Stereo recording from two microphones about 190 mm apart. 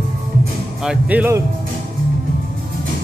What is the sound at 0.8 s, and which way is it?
Speech, 5° right (ahead or behind).